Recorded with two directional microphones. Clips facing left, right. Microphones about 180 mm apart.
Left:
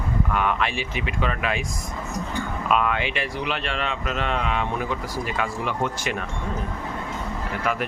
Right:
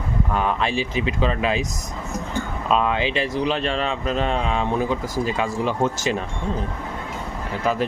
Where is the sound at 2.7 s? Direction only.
30° right (ahead or behind).